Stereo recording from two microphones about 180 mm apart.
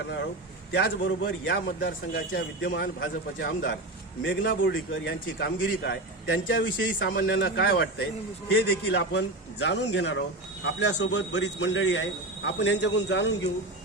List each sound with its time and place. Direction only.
0.7 s a man's voice: 70° left (ahead or behind)
3.4 s a man's voice: 55° left (ahead or behind)
4.2 s a man's voice: 80° left
8.4 s a man's voice: 65° left (ahead or behind)